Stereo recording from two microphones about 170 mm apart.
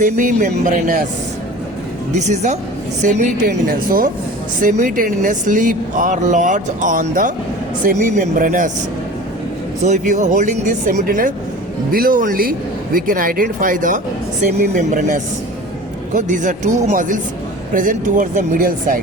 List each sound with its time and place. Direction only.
0.0 s speech: 50° right (ahead or behind)
2.1 s speech: 45° right (ahead or behind)
9.8 s speech: 45° right (ahead or behind)